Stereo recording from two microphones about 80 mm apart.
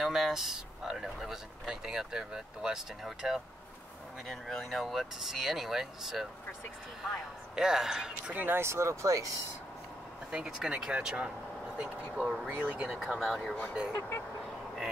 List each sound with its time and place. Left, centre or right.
0.0 s speech: centre
7.5 s speech: centre
8.4 s speech: right
10.3 s speech: centre
12.4 s speech: centre
13.0 s speech: centre
13.9 s speech: left